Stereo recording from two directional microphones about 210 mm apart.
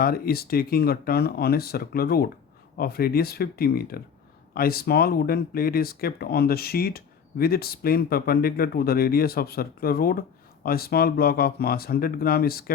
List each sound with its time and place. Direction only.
0.0 s speech: 45° left (ahead or behind)